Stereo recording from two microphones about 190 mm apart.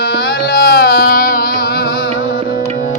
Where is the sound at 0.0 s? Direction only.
50° left (ahead or behind).